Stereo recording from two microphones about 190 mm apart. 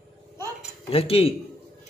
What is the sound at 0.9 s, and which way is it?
Speech, 30° left (ahead or behind).